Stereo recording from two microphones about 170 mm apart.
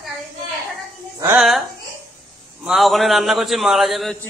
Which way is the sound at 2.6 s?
Centre (ahead or behind).